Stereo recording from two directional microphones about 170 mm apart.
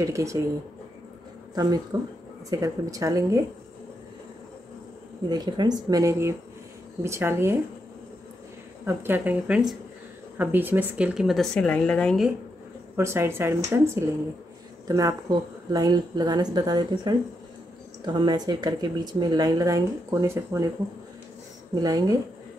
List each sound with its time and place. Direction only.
0.0 s speech: 20° right (ahead or behind)
1.5 s speech: 20° right (ahead or behind)
5.3 s speech: 25° right (ahead or behind)
8.8 s a woman's voice: 15° right (ahead or behind); by 12.3 s 5° left (ahead or behind)
12.9 s speech: 15° right (ahead or behind)
14.9 s speech: 20° right (ahead or behind)
21.7 s speech: 20° right (ahead or behind)